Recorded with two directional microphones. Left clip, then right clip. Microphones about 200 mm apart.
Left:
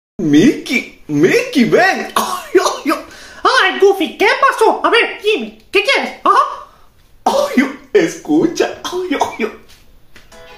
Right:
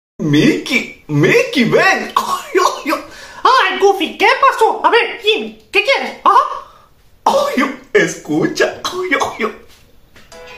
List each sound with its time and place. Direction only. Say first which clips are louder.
0.3 s a woman's voice: left 1 dB; 25° left (ahead or behind)